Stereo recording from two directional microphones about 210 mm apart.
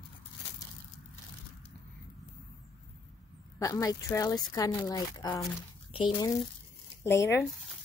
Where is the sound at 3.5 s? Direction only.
15° left (ahead or behind).